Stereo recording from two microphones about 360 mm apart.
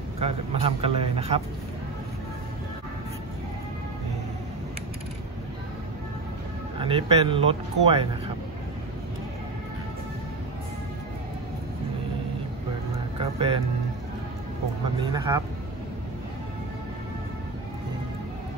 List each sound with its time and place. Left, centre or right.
0.2 s speech: centre
6.8 s speech: centre
13.2 s speech: centre
15.0 s speech: centre